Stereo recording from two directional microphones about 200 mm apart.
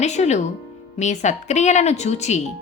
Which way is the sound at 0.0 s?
35° left (ahead or behind).